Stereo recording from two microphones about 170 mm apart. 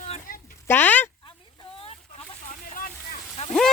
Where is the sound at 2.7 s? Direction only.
55° left (ahead or behind).